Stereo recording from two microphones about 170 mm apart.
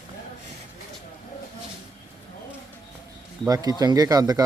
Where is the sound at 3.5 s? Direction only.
20° right (ahead or behind).